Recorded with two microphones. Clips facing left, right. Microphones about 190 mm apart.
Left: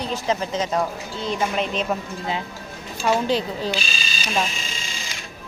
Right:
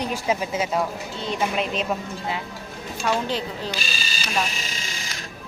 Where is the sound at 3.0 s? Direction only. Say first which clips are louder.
Left 4 dB; 15° left (ahead or behind).